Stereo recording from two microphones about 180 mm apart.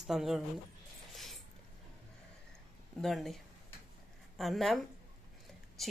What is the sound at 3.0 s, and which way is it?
Speech, centre (ahead or behind).